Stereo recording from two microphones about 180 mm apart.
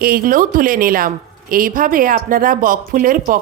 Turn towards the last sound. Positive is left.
turn(degrees=-50)  # may be behind; listen again after turning